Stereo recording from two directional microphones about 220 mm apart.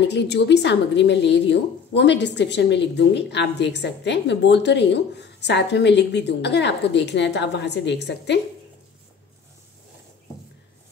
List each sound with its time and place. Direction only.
0.1 s a woman's voice: 50° left (ahead or behind)